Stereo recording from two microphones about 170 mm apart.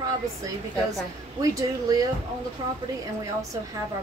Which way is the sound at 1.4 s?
20° right (ahead or behind).